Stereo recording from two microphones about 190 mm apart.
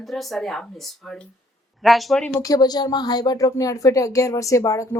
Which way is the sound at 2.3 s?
15° left (ahead or behind).